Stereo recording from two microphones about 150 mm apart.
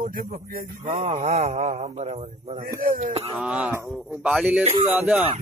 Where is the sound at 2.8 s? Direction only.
70° right (ahead or behind).